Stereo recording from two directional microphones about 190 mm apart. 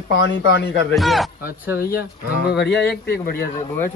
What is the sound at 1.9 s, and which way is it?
Speech, 55° left (ahead or behind).